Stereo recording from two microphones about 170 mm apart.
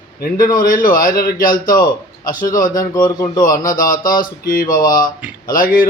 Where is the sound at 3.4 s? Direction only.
55° left (ahead or behind).